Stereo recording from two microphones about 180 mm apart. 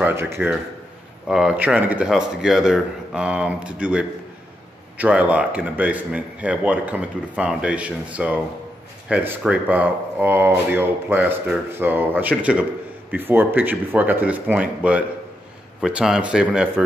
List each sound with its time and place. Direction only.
0.0 s a man's voice: 15° right (ahead or behind)